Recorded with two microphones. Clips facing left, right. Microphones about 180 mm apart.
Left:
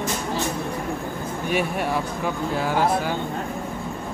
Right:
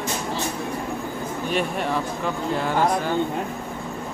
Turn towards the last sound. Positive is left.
turn(degrees=5)  # may be behind; listen again after turning